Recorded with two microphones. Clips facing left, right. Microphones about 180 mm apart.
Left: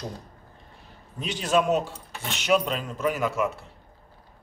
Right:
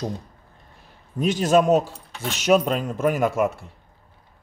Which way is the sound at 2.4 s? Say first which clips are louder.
Right 5 dB; 45° right (ahead or behind).